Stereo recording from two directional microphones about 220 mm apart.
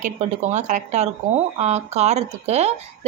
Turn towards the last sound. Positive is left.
turn(degrees=-30)  # may be behind; listen again after turning